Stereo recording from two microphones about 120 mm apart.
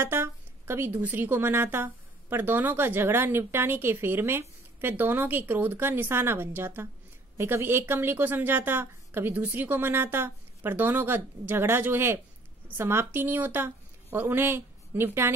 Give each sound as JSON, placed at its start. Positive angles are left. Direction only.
{"t": 0.0, "sound": "a woman's voice", "side_deg": -20}